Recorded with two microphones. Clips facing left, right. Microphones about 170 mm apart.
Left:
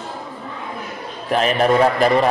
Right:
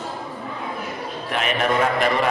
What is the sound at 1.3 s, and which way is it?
Speech, 35° left (ahead or behind).